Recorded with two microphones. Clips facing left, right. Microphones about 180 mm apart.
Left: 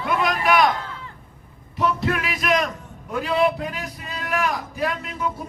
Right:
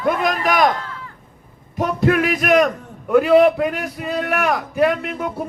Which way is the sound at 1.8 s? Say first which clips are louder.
Right 6 dB; 50° right (ahead or behind).